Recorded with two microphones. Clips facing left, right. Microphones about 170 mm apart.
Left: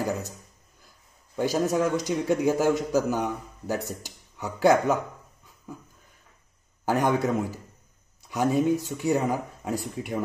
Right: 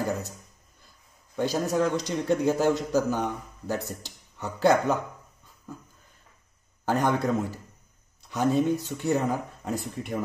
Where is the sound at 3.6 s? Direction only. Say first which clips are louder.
Left 1 dB; 15° left (ahead or behind).